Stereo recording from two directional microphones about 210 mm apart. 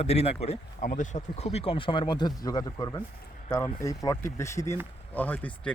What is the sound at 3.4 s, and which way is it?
Speech, 5° left (ahead or behind).